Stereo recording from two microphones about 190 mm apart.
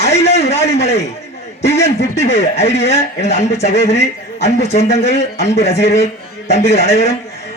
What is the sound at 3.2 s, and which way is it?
A man's voice, 35° left (ahead or behind).